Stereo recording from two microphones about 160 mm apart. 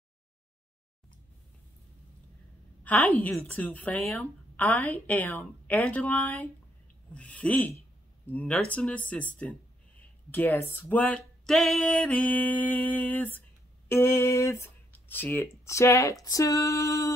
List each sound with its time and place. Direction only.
2.8 s speech: 10° left (ahead or behind)